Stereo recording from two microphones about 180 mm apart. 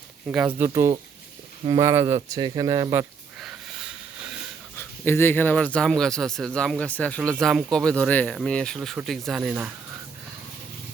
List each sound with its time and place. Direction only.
0.3 s speech: 10° right (ahead or behind)
0.7 s speech: 20° right (ahead or behind)
4.8 s speech: 10° left (ahead or behind); by 9.7 s 5° right (ahead or behind)